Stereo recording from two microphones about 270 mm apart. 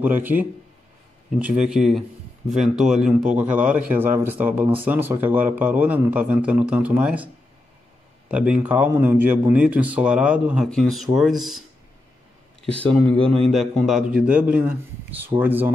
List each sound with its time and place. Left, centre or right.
0.0 s a man's voice: centre
8.3 s speech: centre
13.2 s a man's voice: right
13.5 s speech: centre